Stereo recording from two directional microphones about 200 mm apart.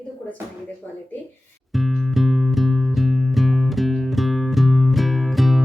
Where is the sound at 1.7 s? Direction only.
Centre (ahead or behind).